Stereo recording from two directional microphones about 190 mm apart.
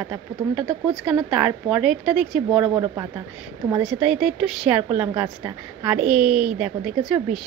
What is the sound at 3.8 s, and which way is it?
A woman's voice, 5° right (ahead or behind).